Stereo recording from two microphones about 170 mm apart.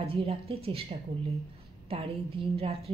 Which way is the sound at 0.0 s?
35° right (ahead or behind).